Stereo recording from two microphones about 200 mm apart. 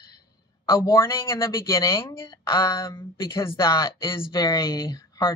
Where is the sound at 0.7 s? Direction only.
15° left (ahead or behind).